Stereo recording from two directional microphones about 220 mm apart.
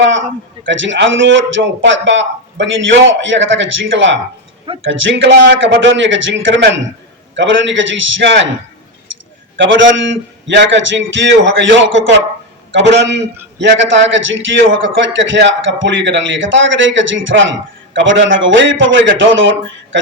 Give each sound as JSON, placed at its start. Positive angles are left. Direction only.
{"t": 0.0, "sound": "a man's voice", "side_deg": -60}
{"t": 9.1, "sound": "a sound", "side_deg": -60}
{"t": 9.6, "sound": "a man's voice", "side_deg": -60}